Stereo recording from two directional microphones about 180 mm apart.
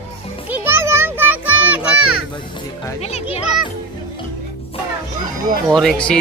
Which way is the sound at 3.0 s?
35° left (ahead or behind).